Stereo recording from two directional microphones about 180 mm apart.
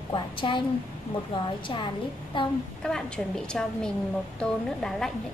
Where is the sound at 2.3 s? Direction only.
25° left (ahead or behind).